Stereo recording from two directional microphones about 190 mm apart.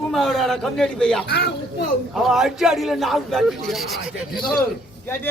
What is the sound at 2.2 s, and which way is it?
Music, centre (ahead or behind).